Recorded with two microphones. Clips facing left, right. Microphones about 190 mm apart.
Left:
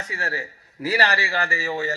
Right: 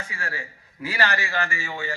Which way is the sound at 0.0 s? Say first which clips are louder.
Left 4 dB; 40° left (ahead or behind).